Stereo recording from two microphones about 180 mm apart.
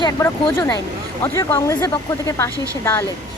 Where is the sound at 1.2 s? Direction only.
15° left (ahead or behind).